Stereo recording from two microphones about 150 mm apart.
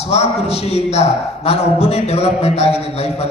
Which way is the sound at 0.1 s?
45° left (ahead or behind).